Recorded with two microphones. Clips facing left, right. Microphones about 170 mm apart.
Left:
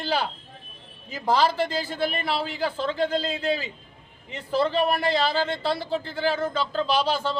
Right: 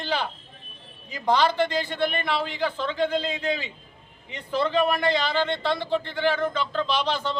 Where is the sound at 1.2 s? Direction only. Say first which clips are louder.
Even; 5° left (ahead or behind).